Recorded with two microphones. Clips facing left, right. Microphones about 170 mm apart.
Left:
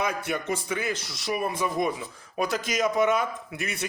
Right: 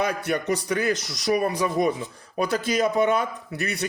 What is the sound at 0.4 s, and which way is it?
Speech, 40° right (ahead or behind).